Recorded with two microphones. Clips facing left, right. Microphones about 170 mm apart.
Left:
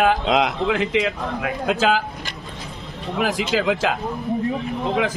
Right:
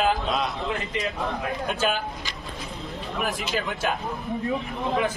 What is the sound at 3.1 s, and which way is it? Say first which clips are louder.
Speech: left 7 dB; 90° left.